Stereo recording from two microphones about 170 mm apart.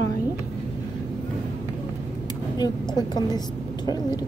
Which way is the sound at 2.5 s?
25° left (ahead or behind).